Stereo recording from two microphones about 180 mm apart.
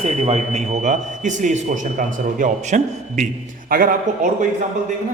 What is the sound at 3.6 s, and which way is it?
Speech, 55° right (ahead or behind).